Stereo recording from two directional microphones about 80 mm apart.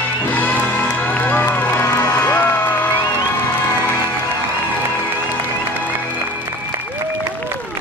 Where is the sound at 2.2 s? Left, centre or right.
Centre.